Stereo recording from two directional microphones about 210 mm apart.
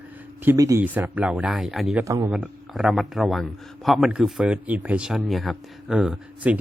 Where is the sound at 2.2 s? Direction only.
Centre (ahead or behind).